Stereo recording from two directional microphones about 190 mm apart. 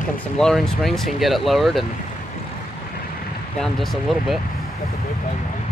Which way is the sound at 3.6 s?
Centre (ahead or behind).